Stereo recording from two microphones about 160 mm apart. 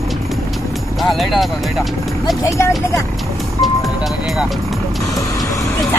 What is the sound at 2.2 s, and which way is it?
Speech, 20° left (ahead or behind).